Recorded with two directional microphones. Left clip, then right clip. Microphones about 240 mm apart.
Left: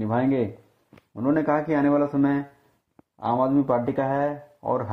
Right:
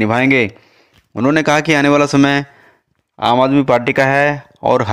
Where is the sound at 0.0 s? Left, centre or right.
Right.